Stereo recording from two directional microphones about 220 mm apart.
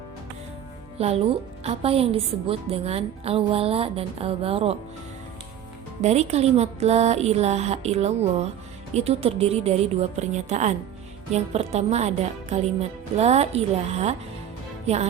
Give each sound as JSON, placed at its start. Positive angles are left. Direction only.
{"t": 0.9, "sound": "a woman's voice", "side_deg": -25}
{"t": 6.0, "sound": "a woman's voice", "side_deg": -30}